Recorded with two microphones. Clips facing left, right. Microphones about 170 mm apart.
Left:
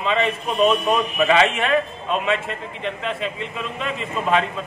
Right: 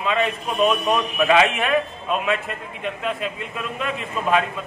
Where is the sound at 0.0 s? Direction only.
5° right (ahead or behind).